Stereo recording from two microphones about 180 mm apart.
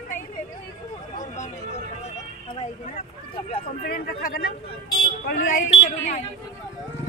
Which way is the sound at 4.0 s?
60° left (ahead or behind).